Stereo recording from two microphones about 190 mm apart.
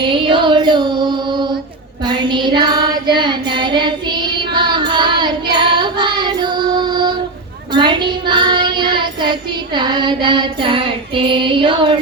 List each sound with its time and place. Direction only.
0.0 s music: 25° right (ahead or behind)
7.7 s child singing: 25° right (ahead or behind)